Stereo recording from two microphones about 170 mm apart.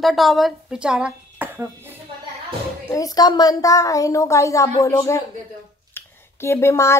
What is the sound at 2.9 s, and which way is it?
A woman's voice, 20° left (ahead or behind).